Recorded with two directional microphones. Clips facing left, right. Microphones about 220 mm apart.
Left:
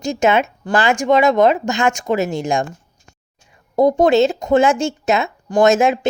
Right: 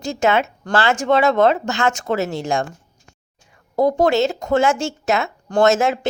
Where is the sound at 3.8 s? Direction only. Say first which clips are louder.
Left 3 dB; 15° left (ahead or behind).